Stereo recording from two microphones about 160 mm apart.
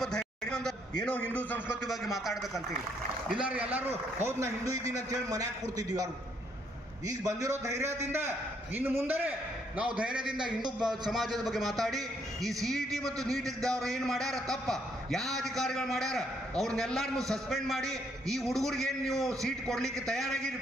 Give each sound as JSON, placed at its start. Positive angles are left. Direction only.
{"t": 0.0, "sound": "a sound", "side_deg": 5}
{"t": 1.0, "sound": "a man's voice", "side_deg": 10}
{"t": 1.6, "sound": "a man's voice", "side_deg": -5}
{"t": 7.1, "sound": "a man's voice", "side_deg": -20}